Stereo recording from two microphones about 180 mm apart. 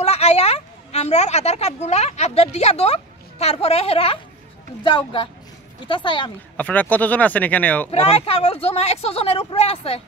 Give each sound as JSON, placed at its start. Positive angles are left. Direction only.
{"t": 0.0, "sound": "a woman's voice", "side_deg": 35}
{"t": 6.5, "sound": "speech", "side_deg": 10}
{"t": 7.9, "sound": "speech", "side_deg": 35}